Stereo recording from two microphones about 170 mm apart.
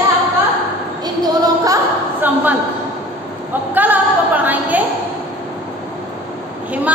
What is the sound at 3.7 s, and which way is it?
A woman's voice, 10° right (ahead or behind).